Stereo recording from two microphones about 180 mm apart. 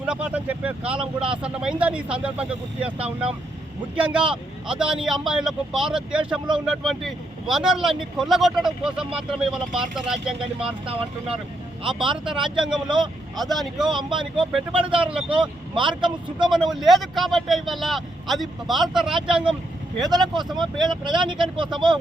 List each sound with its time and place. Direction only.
0.0 s speech: 5° right (ahead or behind)
12.1 s speech: 5° right (ahead or behind)
13.9 s speech: 25° right (ahead or behind)
14.9 s speech: 5° right (ahead or behind)
15.7 s speech: 25° right (ahead or behind)
16.5 s speech: centre (ahead or behind)
20.1 s speech: 25° right (ahead or behind)